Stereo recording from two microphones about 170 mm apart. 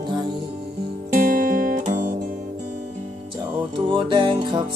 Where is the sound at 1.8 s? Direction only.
45° right (ahead or behind).